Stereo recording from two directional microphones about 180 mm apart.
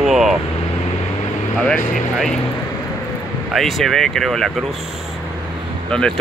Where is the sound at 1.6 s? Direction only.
5° left (ahead or behind).